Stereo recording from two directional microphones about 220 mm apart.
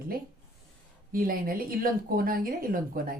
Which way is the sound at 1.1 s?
40° right (ahead or behind).